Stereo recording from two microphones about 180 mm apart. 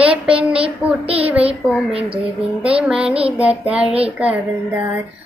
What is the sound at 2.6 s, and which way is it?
Child singing, 5° right (ahead or behind).